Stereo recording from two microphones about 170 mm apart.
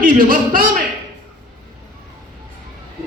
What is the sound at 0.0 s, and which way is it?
Speech, 60° right (ahead or behind).